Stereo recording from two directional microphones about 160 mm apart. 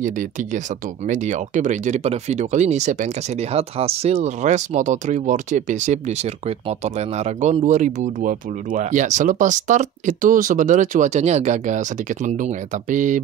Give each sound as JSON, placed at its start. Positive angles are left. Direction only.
{"t": 1.0, "sound": "speech", "side_deg": -50}
{"t": 3.5, "sound": "speech", "side_deg": -40}
{"t": 12.9, "sound": "speech", "side_deg": -55}